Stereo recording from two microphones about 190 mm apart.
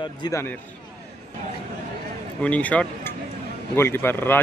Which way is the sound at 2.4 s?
5° left (ahead or behind).